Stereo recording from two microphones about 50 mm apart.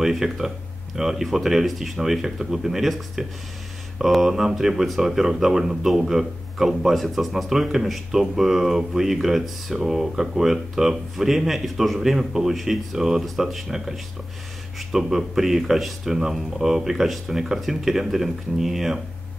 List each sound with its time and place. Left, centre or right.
0.0 s speech: centre